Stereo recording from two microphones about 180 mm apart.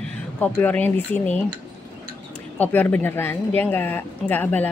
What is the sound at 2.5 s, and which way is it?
A woman's voice, 10° left (ahead or behind).